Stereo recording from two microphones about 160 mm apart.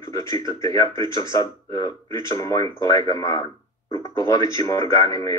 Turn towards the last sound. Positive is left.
turn(degrees=20)  # may be behind; listen again after turning